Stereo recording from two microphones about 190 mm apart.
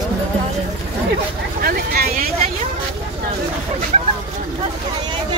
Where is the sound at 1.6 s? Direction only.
50° right (ahead or behind).